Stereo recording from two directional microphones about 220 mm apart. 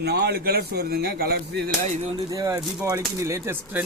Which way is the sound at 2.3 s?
15° right (ahead or behind).